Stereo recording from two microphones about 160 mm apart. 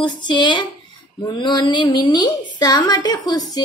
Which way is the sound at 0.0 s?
30° left (ahead or behind).